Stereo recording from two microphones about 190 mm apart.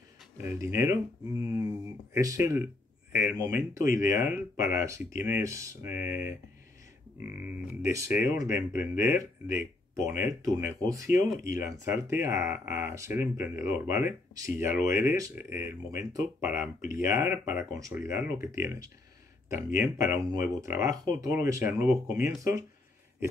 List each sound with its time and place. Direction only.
0.4 s speech: 15° right (ahead or behind)
2.1 s speech: 15° right (ahead or behind)
7.8 s speech: 10° right (ahead or behind)